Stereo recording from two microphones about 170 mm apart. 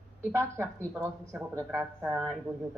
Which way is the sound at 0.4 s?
15° right (ahead or behind).